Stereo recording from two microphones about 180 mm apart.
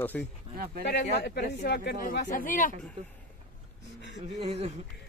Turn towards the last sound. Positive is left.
turn(degrees=-35)  # may be behind; listen again after turning